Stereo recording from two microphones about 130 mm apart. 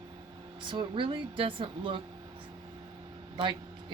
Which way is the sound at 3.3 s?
40° right (ahead or behind).